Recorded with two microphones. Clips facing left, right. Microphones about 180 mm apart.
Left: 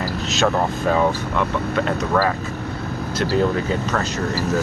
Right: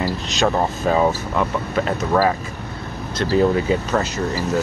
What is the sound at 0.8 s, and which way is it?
Speech, 10° right (ahead or behind).